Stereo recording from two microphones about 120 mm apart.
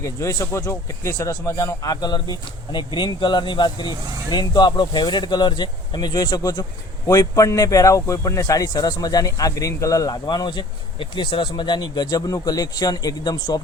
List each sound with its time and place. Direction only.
0.0 s a man's voice: 25° left (ahead or behind)